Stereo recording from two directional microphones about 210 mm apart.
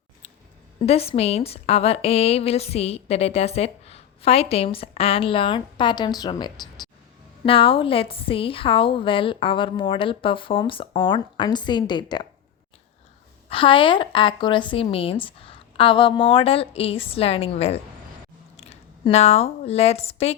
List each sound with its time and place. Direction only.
0.8 s a woman's voice: 30° left (ahead or behind)
13.5 s a woman's voice: 25° left (ahead or behind)